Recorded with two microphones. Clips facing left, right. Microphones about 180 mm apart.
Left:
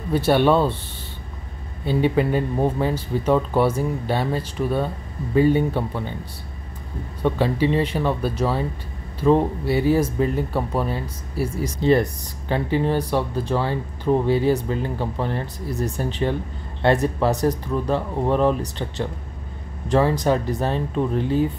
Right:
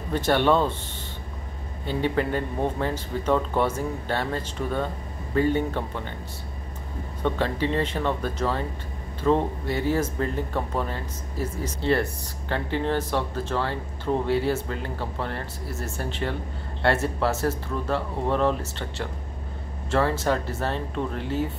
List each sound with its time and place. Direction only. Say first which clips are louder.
0.1 s speech: left 4 dB; 10° left (ahead or behind)
1.9 s speech: left 5 dB; 15° left (ahead or behind)
7.2 s speech: left 5 dB; 10° left (ahead or behind)